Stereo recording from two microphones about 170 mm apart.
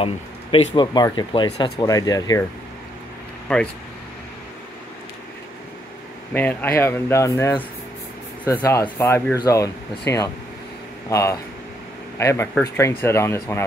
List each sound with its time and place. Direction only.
0.0 s speech: 35° left (ahead or behind)
3.5 s speech: 5° left (ahead or behind)
6.3 s speech: 10° left (ahead or behind)
8.6 s speech: 20° left (ahead or behind)